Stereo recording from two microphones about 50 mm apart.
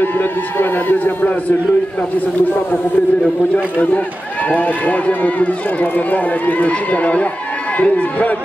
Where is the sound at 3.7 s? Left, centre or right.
Left.